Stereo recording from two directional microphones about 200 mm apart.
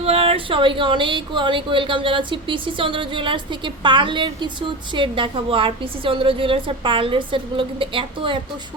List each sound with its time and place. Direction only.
0.0 s speech: 30° right (ahead or behind)